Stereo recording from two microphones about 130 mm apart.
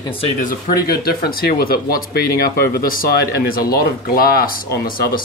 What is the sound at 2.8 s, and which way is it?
Speech, 90° left.